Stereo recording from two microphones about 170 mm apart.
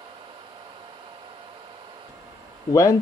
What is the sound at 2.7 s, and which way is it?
Speech, 20° left (ahead or behind).